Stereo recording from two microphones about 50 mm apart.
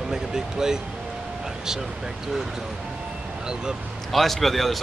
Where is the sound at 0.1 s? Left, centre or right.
Centre.